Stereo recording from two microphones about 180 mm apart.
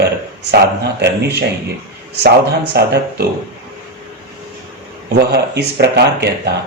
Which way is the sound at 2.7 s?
65° right (ahead or behind).